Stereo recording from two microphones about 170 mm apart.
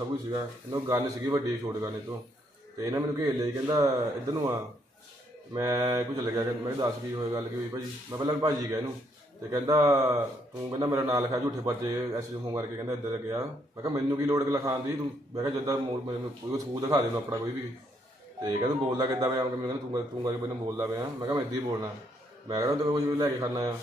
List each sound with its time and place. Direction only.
0.3 s a man's voice: 20° right (ahead or behind)
18.4 s a man's voice: 20° right (ahead or behind)